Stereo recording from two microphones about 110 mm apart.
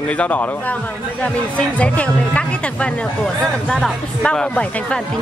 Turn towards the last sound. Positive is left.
turn(degrees=10)  # may be behind; listen again after turning